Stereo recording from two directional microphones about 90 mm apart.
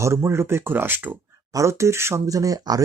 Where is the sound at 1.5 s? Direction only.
35° right (ahead or behind).